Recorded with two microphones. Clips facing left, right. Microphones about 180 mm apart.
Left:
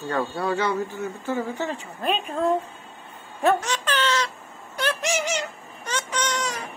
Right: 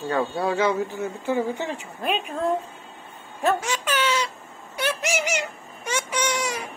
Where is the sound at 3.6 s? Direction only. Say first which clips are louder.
Even; 10° right (ahead or behind).